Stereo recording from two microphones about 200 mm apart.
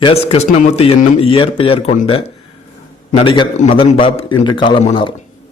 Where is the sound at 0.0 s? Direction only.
30° left (ahead or behind).